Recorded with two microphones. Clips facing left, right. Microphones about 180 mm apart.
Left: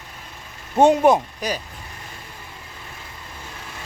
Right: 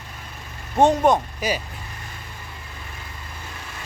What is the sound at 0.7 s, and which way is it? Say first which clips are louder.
Speech: left 2 dB; 10° left (ahead or behind).